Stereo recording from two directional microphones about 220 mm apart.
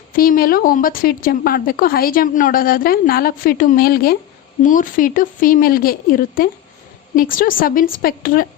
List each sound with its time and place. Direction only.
0.2 s a woman's voice: 40° left (ahead or behind)